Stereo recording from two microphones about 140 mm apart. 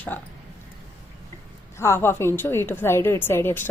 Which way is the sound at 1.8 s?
20° left (ahead or behind).